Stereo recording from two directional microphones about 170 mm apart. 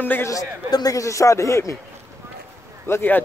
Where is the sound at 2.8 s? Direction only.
10° left (ahead or behind).